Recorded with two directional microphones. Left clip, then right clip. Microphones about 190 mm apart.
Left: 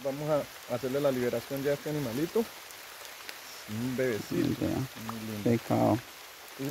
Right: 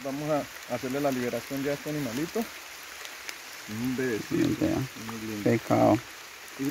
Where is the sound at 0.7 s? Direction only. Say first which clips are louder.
Right 1 dB; 35° left (ahead or behind).